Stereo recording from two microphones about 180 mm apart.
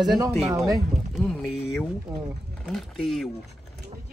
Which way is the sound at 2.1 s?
15° right (ahead or behind).